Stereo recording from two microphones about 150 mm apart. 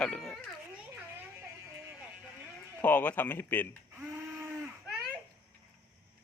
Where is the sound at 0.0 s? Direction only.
5° left (ahead or behind).